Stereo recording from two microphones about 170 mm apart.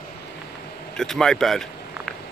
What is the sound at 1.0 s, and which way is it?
Speech, 5° left (ahead or behind).